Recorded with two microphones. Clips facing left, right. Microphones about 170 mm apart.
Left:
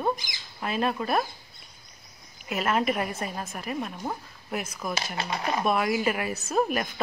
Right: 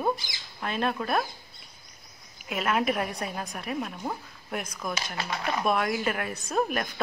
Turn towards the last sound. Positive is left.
turn(degrees=0)  # may be behind; listen again after turning